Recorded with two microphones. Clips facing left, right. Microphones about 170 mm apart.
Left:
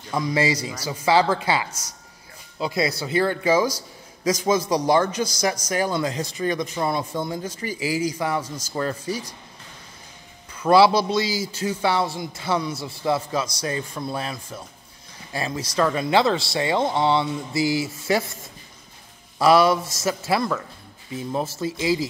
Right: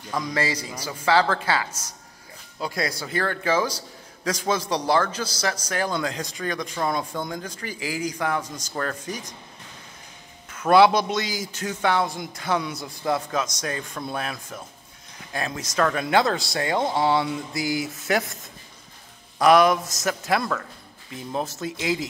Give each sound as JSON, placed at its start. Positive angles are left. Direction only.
{"t": 0.1, "sound": "a man's voice", "side_deg": 10}
{"t": 10.6, "sound": "a man's voice", "side_deg": 0}
{"t": 10.9, "sound": "a man's voice", "side_deg": -20}
{"t": 11.6, "sound": "a man's voice", "side_deg": 5}
{"t": 19.3, "sound": "speech", "side_deg": 5}